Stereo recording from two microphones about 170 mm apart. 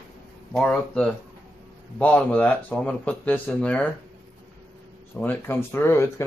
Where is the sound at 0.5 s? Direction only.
5° left (ahead or behind).